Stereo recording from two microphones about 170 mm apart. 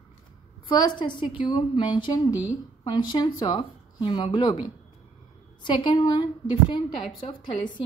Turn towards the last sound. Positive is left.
turn(degrees=30)  # may be behind; listen again after turning